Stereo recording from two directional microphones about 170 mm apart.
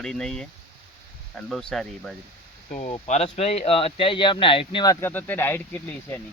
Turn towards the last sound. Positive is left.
turn(degrees=10)  # may be behind; listen again after turning